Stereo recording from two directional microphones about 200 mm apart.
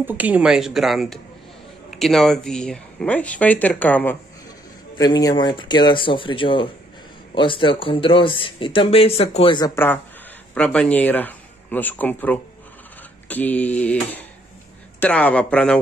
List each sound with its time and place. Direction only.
0.0 s speech: 10° right (ahead or behind); by 4.2 s 10° left (ahead or behind)
4.9 s speech: 20° left (ahead or behind)
10.5 s speech: 5° left (ahead or behind)
13.3 s mantra: 10° left (ahead or behind)
15.0 s speech: 5° left (ahead or behind)